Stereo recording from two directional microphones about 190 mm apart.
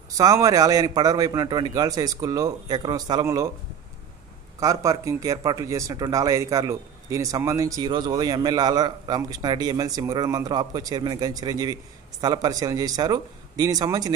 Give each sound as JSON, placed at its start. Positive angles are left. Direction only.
{"t": 0.2, "sound": "speech", "side_deg": -15}
{"t": 4.6, "sound": "speech", "side_deg": -15}